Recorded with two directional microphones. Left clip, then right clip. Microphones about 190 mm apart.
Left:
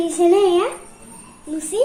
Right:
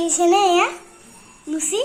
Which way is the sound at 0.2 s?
55° right (ahead or behind).